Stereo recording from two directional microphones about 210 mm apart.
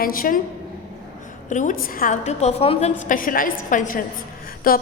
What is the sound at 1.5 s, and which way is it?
A woman's voice, 40° left (ahead or behind).